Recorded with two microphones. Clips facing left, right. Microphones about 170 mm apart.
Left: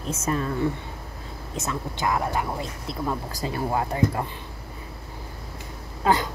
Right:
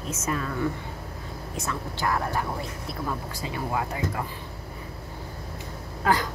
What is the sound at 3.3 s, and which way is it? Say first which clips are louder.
Speech: left 3 dB; 40° left (ahead or behind).